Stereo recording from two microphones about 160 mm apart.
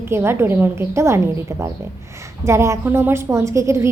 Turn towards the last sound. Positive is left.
turn(degrees=-15)  # may be behind; listen again after turning